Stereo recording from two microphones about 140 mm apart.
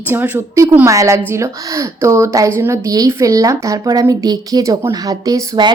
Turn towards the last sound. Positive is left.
turn(degrees=-30)  # may be behind; listen again after turning